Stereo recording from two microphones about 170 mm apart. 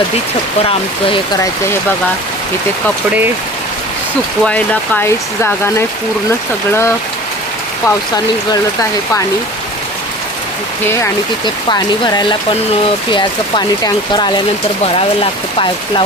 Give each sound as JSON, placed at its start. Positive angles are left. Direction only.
{"t": 0.6, "sound": "speech", "side_deg": 35}
{"t": 4.4, "sound": "speech", "side_deg": 10}
{"t": 7.9, "sound": "speech", "side_deg": 20}
{"t": 11.4, "sound": "speech", "side_deg": 25}